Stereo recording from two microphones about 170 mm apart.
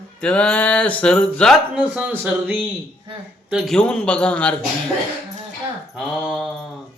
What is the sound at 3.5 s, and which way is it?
Mantra, centre (ahead or behind).